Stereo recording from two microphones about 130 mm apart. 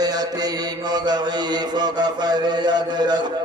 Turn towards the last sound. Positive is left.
turn(degrees=-35)  # may be behind; listen again after turning